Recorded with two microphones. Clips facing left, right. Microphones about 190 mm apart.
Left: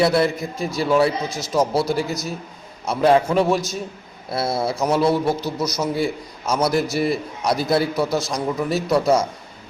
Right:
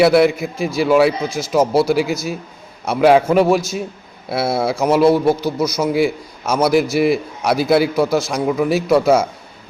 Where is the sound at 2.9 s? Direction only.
75° right (ahead or behind).